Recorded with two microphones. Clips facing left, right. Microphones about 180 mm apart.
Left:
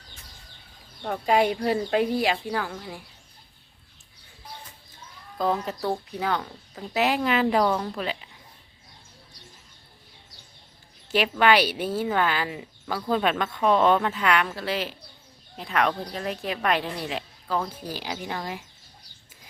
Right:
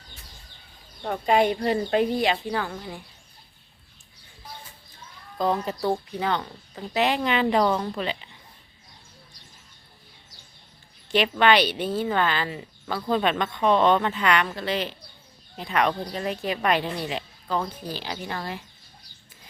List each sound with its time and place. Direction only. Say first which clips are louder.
1.0 s a woman's voice: right 1 dB; centre (ahead or behind)
5.4 s a woman's voice: right 1 dB; centre (ahead or behind)
11.1 s a woman's voice: right 1 dB; 5° left (ahead or behind)